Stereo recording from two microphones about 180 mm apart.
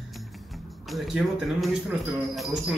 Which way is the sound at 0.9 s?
Centre (ahead or behind).